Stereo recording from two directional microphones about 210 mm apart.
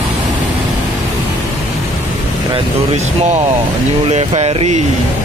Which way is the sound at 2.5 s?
30° right (ahead or behind).